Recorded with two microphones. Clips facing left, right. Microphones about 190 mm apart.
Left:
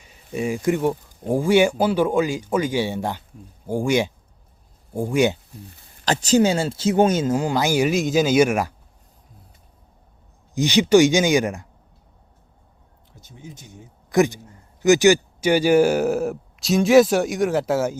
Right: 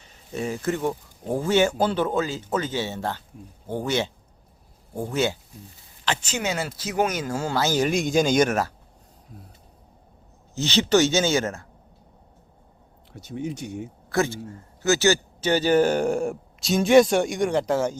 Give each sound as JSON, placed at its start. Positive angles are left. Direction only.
{"t": 0.0, "sound": "a man's voice", "side_deg": 10}
{"t": 6.1, "sound": "a man's voice", "side_deg": 35}
{"t": 10.5, "sound": "a man's voice", "side_deg": 15}
{"t": 13.1, "sound": "speech", "side_deg": -75}
{"t": 14.1, "sound": "a man's voice", "side_deg": 15}